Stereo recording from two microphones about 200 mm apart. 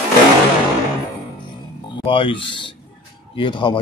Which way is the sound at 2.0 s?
25° left (ahead or behind).